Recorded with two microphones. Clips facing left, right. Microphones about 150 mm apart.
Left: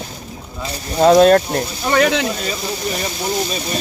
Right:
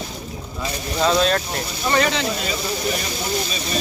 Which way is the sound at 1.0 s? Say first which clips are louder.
Left 9 dB; 50° left (ahead or behind).